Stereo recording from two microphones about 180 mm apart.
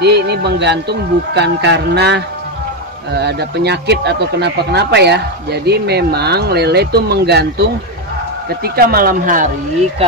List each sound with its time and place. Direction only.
0.0 s speech: 65° right (ahead or behind)
8.6 s speech: 55° right (ahead or behind)